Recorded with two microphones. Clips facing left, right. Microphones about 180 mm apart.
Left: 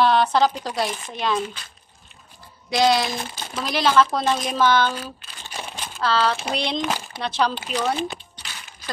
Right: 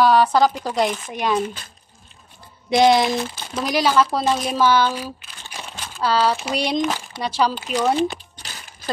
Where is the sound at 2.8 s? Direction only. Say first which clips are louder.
Right 4 dB; 20° right (ahead or behind).